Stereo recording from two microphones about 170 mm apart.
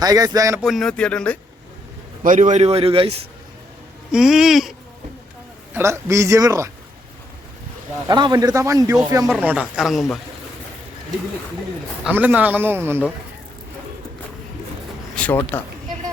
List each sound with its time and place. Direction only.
0.0 s a man's voice: 20° right (ahead or behind)
0.6 s speech: centre (ahead or behind)
2.2 s a man's voice: 50° right (ahead or behind); by 3.2 s 35° right (ahead or behind)
4.1 s speech: 5° right (ahead or behind)
5.7 s a man's voice: 15° right (ahead or behind)
8.0 s a man's voice: 25° right (ahead or behind)
9.3 s speech: 10° right (ahead or behind)
12.0 s a man's voice: 10° right (ahead or behind)
15.1 s a sound: 5° left (ahead or behind)